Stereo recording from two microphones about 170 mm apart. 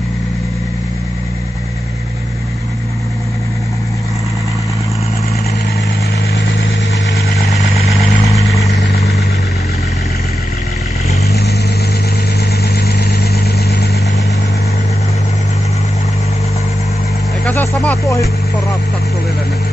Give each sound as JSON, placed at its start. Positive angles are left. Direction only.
{"t": 12.4, "sound": "vehicle", "side_deg": 65}
{"t": 17.5, "sound": "vehicle", "side_deg": 10}